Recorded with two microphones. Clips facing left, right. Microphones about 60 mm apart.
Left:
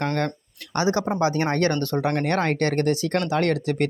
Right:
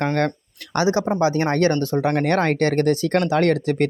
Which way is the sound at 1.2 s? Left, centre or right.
Right.